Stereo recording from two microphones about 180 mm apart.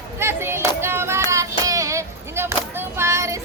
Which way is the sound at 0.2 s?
15° right (ahead or behind).